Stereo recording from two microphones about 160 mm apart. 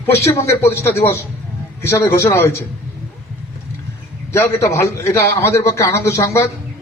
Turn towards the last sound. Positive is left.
turn(degrees=15)  # may be behind; listen again after turning